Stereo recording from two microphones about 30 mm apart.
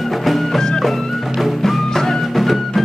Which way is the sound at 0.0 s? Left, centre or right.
Centre.